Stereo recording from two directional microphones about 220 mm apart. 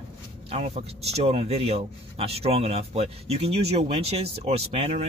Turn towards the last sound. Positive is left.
turn(degrees=-30)  # may be behind; listen again after turning